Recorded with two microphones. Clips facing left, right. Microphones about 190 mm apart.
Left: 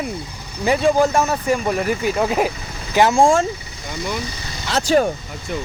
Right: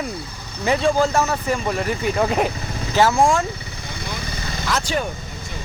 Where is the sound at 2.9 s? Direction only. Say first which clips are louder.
Left 2 dB; 20° left (ahead or behind).